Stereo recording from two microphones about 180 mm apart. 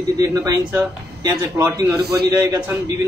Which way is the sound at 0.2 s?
15° right (ahead or behind).